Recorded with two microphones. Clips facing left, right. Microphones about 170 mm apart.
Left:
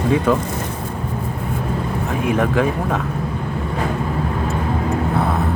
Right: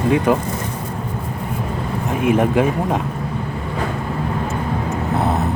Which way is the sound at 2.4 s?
15° right (ahead or behind).